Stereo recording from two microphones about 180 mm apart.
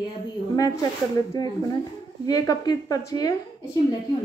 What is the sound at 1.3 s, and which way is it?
Speech, 20° left (ahead or behind).